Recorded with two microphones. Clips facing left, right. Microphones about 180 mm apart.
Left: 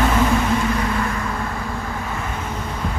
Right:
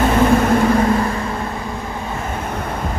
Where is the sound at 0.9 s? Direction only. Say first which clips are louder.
Right 6 dB; 35° right (ahead or behind).